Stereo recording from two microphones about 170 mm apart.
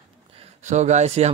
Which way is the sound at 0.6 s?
45° right (ahead or behind).